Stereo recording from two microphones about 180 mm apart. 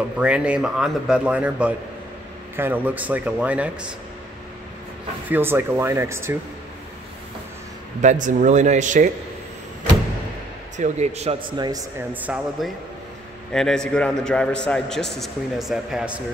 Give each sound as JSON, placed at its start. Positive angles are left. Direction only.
{"t": 0.2, "sound": "a man's voice", "side_deg": -5}
{"t": 5.3, "sound": "a man's voice", "side_deg": -10}
{"t": 8.0, "sound": "speech", "side_deg": -40}
{"t": 10.8, "sound": "a man's voice", "side_deg": -40}
{"t": 11.5, "sound": "speech", "side_deg": -25}
{"t": 12.1, "sound": "a man's voice", "side_deg": -10}